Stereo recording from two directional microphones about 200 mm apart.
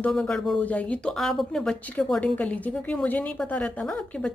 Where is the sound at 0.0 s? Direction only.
5° left (ahead or behind).